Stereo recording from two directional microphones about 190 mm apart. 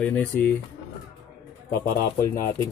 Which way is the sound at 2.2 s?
15° left (ahead or behind).